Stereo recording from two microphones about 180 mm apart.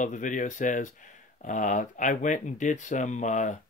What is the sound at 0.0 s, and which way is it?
Speech, 45° left (ahead or behind).